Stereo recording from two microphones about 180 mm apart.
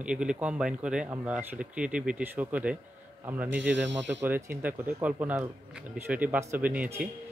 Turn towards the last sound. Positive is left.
turn(degrees=-10)  # may be behind; listen again after turning